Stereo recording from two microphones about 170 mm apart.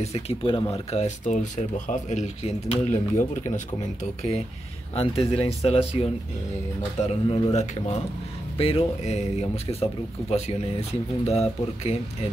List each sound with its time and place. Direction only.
0.0 s speech: 35° left (ahead or behind)
7.2 s speech: 30° left (ahead or behind)
8.5 s speech: 35° left (ahead or behind)